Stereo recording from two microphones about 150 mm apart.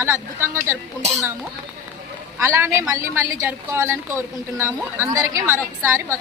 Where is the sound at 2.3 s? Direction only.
15° right (ahead or behind).